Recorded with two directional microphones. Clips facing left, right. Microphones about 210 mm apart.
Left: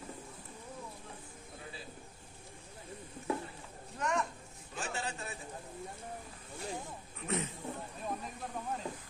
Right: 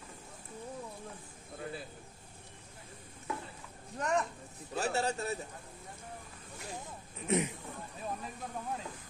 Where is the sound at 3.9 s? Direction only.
35° right (ahead or behind).